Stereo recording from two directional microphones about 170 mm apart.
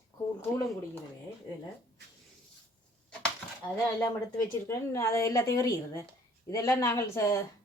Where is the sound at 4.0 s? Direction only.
20° left (ahead or behind).